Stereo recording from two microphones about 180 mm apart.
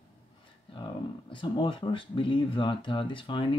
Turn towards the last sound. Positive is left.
turn(degrees=30)  # may be behind; listen again after turning